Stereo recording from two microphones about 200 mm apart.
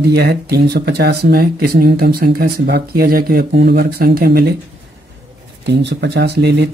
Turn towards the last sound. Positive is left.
turn(degrees=-55)  # may be behind; listen again after turning